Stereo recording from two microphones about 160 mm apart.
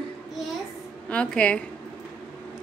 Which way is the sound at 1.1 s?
5° left (ahead or behind).